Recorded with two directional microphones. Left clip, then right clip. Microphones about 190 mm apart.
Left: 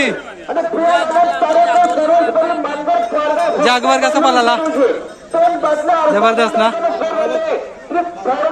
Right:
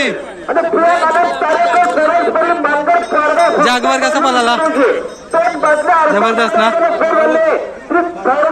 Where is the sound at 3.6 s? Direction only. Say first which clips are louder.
Right 1 dB; 5° left (ahead or behind).